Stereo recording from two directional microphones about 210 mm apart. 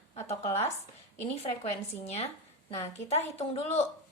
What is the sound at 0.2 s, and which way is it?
Speech, 30° left (ahead or behind).